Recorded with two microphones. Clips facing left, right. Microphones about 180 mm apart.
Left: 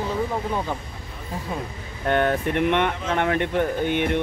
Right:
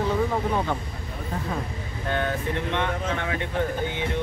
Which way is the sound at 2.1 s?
60° left (ahead or behind).